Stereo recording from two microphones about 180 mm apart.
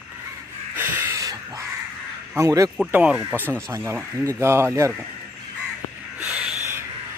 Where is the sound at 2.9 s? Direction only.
5° right (ahead or behind).